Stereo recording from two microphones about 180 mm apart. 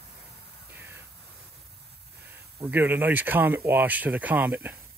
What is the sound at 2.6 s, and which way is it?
Speech, 10° right (ahead or behind).